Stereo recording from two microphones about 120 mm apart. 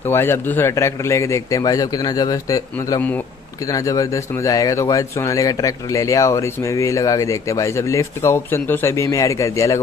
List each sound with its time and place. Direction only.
0.1 s a man's voice: 20° left (ahead or behind)